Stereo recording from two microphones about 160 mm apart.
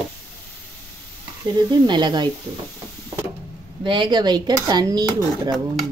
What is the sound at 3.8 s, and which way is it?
Speech, 30° right (ahead or behind).